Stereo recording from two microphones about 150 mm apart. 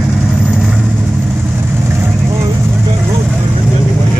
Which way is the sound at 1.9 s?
15° right (ahead or behind).